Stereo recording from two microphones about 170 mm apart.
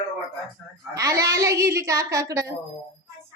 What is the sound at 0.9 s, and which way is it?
Speech, 20° right (ahead or behind).